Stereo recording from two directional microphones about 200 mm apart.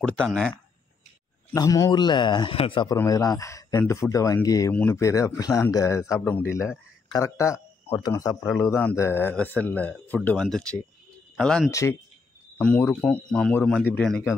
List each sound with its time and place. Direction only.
0.0 s speech: 5° left (ahead or behind)
1.5 s a man's voice: 15° left (ahead or behind); by 11.7 s centre (ahead or behind)
11.7 s speech: 15° left (ahead or behind)